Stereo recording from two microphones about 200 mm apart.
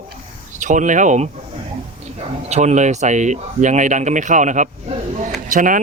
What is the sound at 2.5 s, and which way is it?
Speech, 35° right (ahead or behind).